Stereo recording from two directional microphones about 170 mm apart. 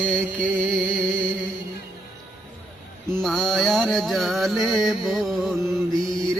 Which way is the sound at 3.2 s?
Centre (ahead or behind).